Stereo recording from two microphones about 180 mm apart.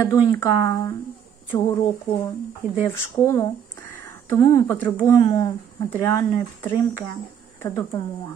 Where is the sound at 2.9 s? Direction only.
15° left (ahead or behind).